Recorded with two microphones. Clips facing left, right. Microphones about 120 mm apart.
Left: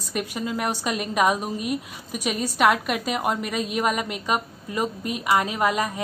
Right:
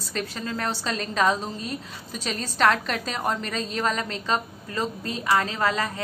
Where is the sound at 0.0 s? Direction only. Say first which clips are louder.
Left 3 dB; 15° left (ahead or behind).